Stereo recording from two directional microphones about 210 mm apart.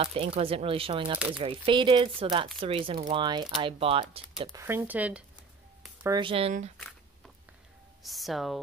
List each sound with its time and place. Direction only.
0.0 s speech: 25° right (ahead or behind)
4.4 s speech: 15° right (ahead or behind)
6.0 s speech: 20° right (ahead or behind)
8.0 s speech: centre (ahead or behind)